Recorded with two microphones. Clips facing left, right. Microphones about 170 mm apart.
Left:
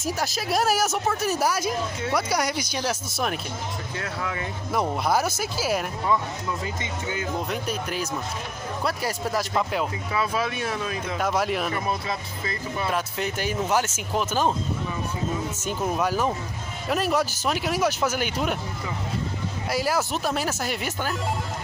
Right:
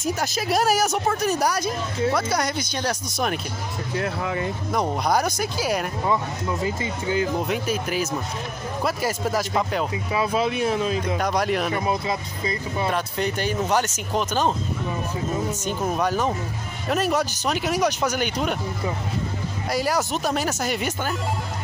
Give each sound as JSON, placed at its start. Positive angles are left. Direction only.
{"t": 0.0, "sound": "speech", "side_deg": 0}
{"t": 4.0, "sound": "speech", "side_deg": -20}
{"t": 5.0, "sound": "speech", "side_deg": 5}
{"t": 6.8, "sound": "speech", "side_deg": -35}
{"t": 7.4, "sound": "speech", "side_deg": -5}
{"t": 10.1, "sound": "speech", "side_deg": -20}
{"t": 11.1, "sound": "speech", "side_deg": 5}
{"t": 11.7, "sound": "speech", "side_deg": -20}
{"t": 12.9, "sound": "speech", "side_deg": 5}
{"t": 15.6, "sound": "speech", "side_deg": 5}
{"t": 19.7, "sound": "speech", "side_deg": 0}